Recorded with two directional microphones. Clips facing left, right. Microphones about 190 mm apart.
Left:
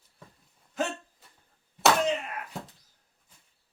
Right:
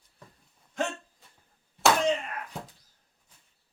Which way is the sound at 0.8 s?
5° left (ahead or behind).